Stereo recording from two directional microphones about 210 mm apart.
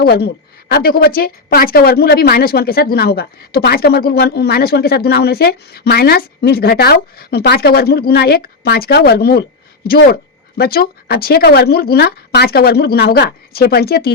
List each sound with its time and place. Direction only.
0.0 s a woman's voice: 50° left (ahead or behind)